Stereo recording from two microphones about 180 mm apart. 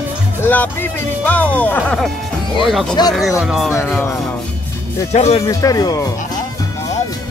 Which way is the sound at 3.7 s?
10° left (ahead or behind).